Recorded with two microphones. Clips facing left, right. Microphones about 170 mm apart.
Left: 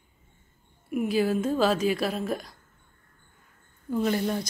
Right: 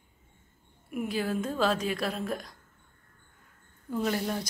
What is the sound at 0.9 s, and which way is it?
A woman's voice, 5° left (ahead or behind).